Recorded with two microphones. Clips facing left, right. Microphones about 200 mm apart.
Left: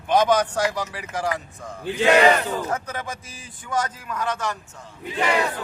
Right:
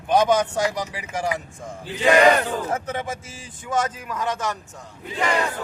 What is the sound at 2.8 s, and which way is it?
A man's voice, 25° right (ahead or behind).